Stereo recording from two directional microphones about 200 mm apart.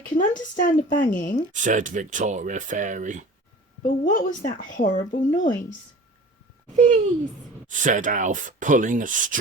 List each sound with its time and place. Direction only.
0.0 s a woman's voice: 40° left (ahead or behind)
1.6 s speech: 40° right (ahead or behind)
3.8 s a woman's voice: 40° left (ahead or behind)
6.7 s speech: 35° right (ahead or behind)